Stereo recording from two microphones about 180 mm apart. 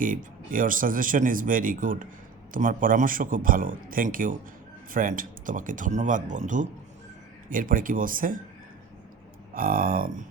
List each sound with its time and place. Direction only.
0.0 s speech: 50° right (ahead or behind)
9.6 s speech: 50° right (ahead or behind)